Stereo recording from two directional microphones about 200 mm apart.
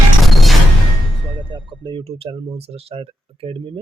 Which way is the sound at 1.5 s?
25° right (ahead or behind).